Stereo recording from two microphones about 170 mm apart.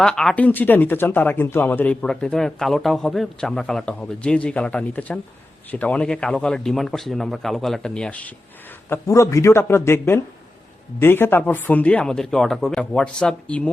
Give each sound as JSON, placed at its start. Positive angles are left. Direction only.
{"t": 0.0, "sound": "a man's voice", "side_deg": 5}
{"t": 8.9, "sound": "speech", "side_deg": 15}